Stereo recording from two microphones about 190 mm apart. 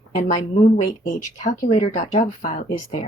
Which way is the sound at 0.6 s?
40° left (ahead or behind).